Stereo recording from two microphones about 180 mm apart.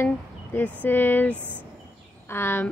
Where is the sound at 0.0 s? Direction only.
10° left (ahead or behind).